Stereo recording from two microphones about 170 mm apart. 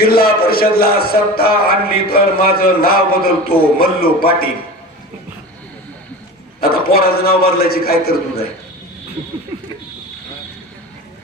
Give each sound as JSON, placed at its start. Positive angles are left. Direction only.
{"t": 0.0, "sound": "speech", "side_deg": 60}
{"t": 6.6, "sound": "speech", "side_deg": 60}